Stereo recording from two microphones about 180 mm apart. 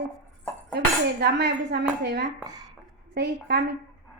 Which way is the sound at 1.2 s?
65° right (ahead or behind).